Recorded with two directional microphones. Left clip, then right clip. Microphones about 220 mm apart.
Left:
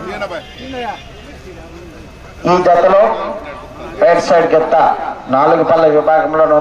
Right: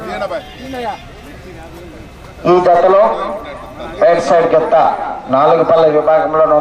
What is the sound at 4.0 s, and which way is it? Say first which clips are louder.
A man's voice: even; 5° left (ahead or behind).